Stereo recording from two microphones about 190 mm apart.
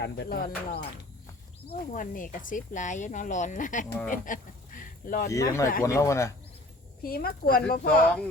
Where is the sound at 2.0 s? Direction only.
45° left (ahead or behind).